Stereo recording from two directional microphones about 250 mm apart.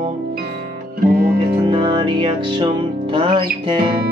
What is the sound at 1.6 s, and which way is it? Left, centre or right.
Music, centre.